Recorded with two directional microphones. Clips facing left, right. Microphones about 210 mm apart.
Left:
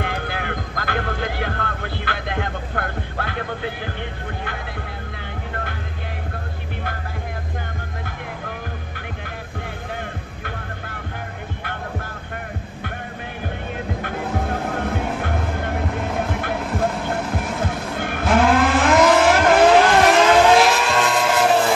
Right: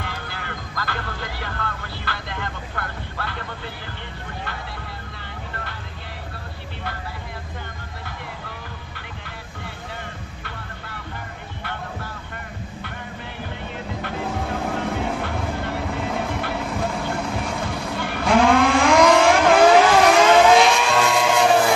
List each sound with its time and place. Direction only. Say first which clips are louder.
0.0 s vehicle: left 7 dB; 55° left (ahead or behind)
14.0 s music: left 1 dB; 55° left (ahead or behind)
17.2 s vehicle: left 1 dB; 5° left (ahead or behind)
17.9 s vehicle: left 1 dB; 50° left (ahead or behind)
18.2 s vehicle: even; 5° left (ahead or behind)